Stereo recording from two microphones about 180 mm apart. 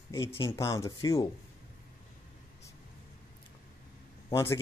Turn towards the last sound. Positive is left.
turn(degrees=15)  # may be behind; listen again after turning